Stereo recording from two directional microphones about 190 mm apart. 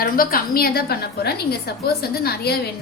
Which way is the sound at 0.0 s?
50° left (ahead or behind).